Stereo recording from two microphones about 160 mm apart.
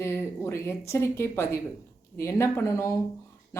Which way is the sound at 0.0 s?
15° left (ahead or behind).